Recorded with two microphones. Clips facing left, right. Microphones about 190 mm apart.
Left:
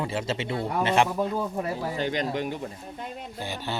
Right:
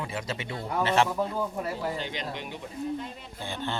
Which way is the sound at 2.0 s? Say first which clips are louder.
Left 8 dB; 45° left (ahead or behind).